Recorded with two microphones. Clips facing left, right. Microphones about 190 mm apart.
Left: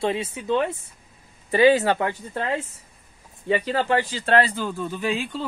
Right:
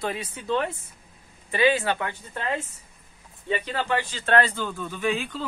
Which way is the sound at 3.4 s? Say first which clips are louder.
Left 5 dB; 35° left (ahead or behind).